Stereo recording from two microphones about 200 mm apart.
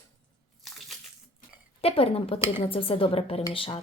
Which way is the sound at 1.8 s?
30° left (ahead or behind).